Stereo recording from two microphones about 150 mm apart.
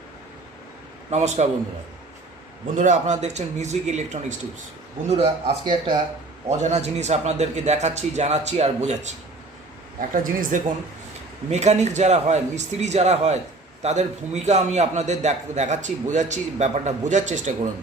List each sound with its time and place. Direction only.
1.1 s a man's voice: 50° right (ahead or behind)
2.7 s a man's voice: 55° right (ahead or behind)
5.0 s speech: 40° right (ahead or behind)
6.6 s a man's voice: 50° right (ahead or behind)
10.0 s speech: 65° right (ahead or behind)
11.5 s a man's voice: 50° right (ahead or behind)